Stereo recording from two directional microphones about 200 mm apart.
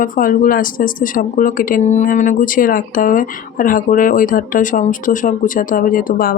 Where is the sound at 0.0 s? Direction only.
45° left (ahead or behind).